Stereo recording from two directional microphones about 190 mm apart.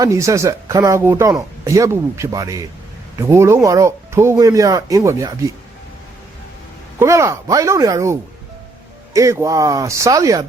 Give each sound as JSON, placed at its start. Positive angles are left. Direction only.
{"t": 0.0, "sound": "speech", "side_deg": -15}
{"t": 7.0, "sound": "speech", "side_deg": -15}